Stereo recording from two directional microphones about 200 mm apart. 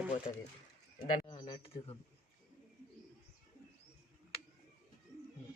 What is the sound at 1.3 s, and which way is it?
Speech, 25° left (ahead or behind).